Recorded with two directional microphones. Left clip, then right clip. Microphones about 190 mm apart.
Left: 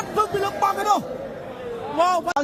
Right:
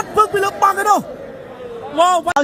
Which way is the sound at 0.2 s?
25° right (ahead or behind).